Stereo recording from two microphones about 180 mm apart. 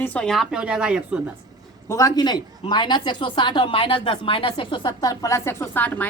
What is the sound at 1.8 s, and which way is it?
A woman's voice, 20° left (ahead or behind).